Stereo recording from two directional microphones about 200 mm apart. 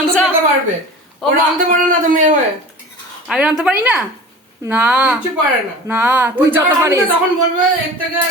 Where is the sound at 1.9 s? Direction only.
40° right (ahead or behind).